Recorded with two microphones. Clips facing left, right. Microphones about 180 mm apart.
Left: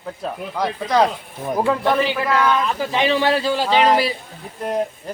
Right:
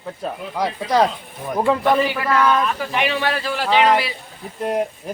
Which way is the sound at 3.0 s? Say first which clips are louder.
Left 5 dB; 30° left (ahead or behind).